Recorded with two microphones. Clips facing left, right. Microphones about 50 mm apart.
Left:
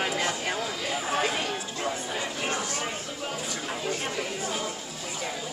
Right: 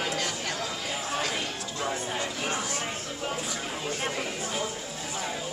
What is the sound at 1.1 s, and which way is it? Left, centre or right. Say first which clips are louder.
Music: left 4 dB; centre.